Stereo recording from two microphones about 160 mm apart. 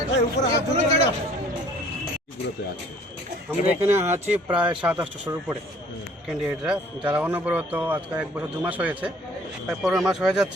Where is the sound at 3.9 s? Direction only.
15° right (ahead or behind).